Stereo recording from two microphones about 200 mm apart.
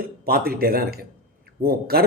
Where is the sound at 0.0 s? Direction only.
50° right (ahead or behind).